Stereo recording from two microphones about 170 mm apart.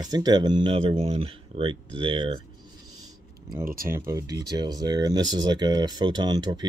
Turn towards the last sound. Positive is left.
turn(degrees=-25)  # may be behind; listen again after turning